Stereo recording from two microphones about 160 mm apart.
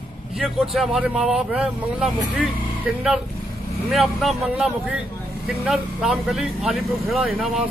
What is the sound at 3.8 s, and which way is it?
Speech, centre (ahead or behind).